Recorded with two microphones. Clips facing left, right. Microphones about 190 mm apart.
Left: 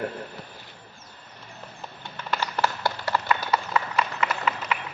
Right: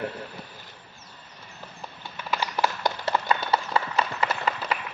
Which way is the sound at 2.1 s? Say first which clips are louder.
Even; 10° right (ahead or behind).